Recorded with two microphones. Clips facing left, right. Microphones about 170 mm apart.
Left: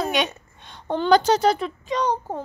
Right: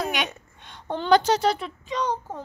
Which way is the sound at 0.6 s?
35° left (ahead or behind).